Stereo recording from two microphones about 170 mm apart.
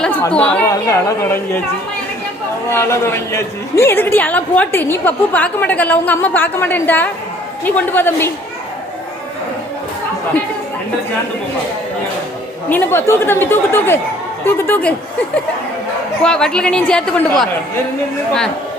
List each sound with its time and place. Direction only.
0.0 s speech: 10° left (ahead or behind)
0.9 s speech: 20° left (ahead or behind)
2.6 s a woman's voice: 15° left (ahead or behind)
12.6 s a woman's voice: 10° left (ahead or behind)
16.2 s a woman's voice: 5° left (ahead or behind)